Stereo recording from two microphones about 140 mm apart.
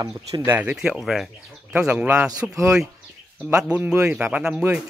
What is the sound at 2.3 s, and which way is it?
Speech, 25° right (ahead or behind).